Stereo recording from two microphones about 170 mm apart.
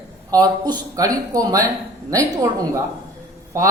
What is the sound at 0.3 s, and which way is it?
Speech, 20° right (ahead or behind).